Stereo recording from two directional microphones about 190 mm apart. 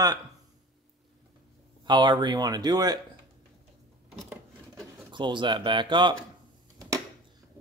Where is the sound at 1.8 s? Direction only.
25° right (ahead or behind).